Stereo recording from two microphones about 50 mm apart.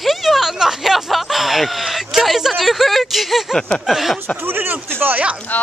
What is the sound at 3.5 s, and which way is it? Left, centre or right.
Speech, centre.